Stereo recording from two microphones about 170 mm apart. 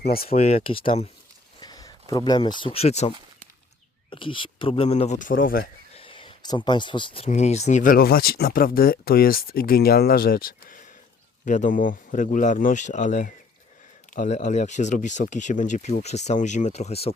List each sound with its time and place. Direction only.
0.0 s speech: 60° left (ahead or behind)
0.3 s speech: 40° left (ahead or behind)
1.5 s speech: 25° left (ahead or behind); by 3.2 s 40° left (ahead or behind)
4.1 s speech: 30° left (ahead or behind); by 5.6 s 55° left (ahead or behind)
6.0 s speech: 30° left (ahead or behind)
7.3 s speech: 40° left (ahead or behind)